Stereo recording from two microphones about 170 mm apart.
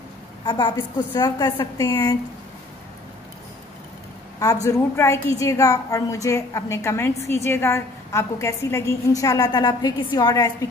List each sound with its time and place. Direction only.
0.5 s a woman's voice: 25° left (ahead or behind)
4.6 s a woman's voice: 15° left (ahead or behind)